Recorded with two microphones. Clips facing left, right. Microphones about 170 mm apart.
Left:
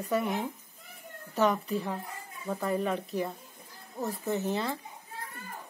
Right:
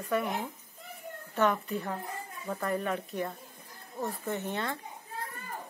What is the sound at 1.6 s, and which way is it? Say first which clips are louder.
Speech: left 2 dB; centre (ahead or behind).